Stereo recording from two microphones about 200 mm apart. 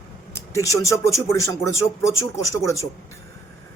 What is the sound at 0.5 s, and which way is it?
Speech, 15° left (ahead or behind).